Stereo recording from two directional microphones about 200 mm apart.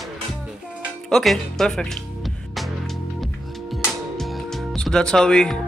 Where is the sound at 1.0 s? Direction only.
Centre (ahead or behind).